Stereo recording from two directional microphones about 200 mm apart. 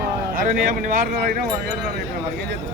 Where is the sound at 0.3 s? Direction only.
45° right (ahead or behind).